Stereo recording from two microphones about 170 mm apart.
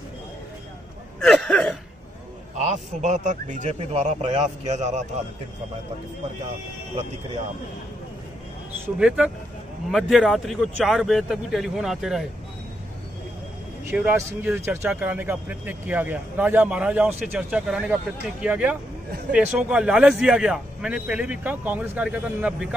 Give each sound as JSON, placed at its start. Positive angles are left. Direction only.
{"t": 1.2, "sound": "speech", "side_deg": 0}
{"t": 2.6, "sound": "a man's voice", "side_deg": -45}
{"t": 8.9, "sound": "a man's voice", "side_deg": -5}
{"t": 13.8, "sound": "a man's voice", "side_deg": -10}